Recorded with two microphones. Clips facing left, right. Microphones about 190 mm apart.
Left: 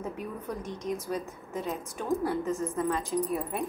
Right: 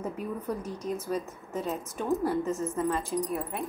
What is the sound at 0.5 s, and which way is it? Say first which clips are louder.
A woman's voice: left 1 dB; 10° right (ahead or behind).